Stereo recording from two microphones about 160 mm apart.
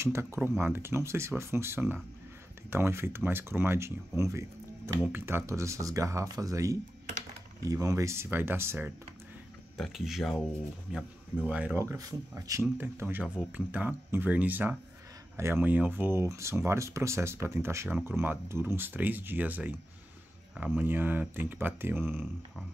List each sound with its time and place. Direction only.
0.0 s speech: 15° right (ahead or behind)
9.8 s speech: centre (ahead or behind)